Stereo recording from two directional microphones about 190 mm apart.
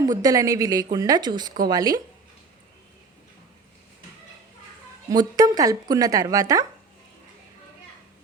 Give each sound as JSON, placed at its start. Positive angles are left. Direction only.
{"t": 0.0, "sound": "a woman's voice", "side_deg": -20}
{"t": 5.0, "sound": "a woman's voice", "side_deg": -20}